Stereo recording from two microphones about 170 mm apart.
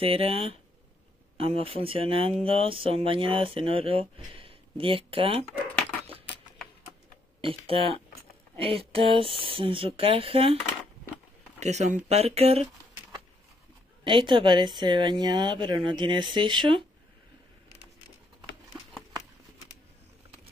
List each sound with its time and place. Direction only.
0.0 s speech: 35° right (ahead or behind)
5.8 s dog: 5° left (ahead or behind)
7.4 s speech: 35° right (ahead or behind)
11.6 s speech: 40° right (ahead or behind)
14.0 s speech: 30° right (ahead or behind)
18.7 s a sound: centre (ahead or behind)